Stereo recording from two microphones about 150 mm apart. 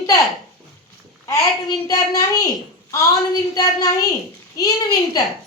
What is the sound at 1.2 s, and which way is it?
A woman's voice, 20° left (ahead or behind).